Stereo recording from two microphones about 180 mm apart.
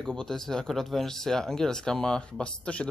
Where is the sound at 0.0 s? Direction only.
Centre (ahead or behind).